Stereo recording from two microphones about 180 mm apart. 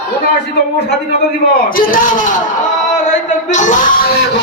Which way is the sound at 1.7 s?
50° left (ahead or behind).